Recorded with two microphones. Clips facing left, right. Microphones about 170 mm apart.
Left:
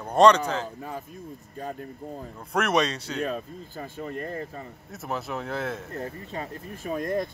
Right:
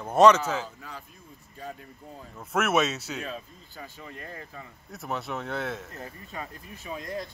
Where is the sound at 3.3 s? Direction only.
50° left (ahead or behind).